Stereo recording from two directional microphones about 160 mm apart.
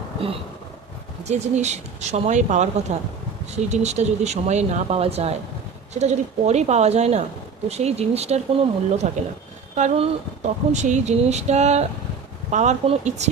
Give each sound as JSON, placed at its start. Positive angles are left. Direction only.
{"t": 1.2, "sound": "speech", "side_deg": -45}